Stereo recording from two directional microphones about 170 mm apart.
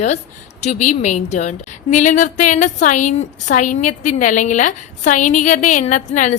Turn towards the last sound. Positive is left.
turn(degrees=45)  # may be behind; listen again after turning